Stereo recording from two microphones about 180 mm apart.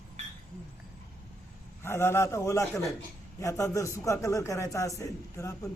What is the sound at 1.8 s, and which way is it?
A man's voice, 15° left (ahead or behind).